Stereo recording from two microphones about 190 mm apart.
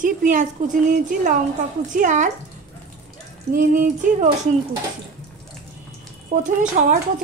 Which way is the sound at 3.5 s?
45° right (ahead or behind).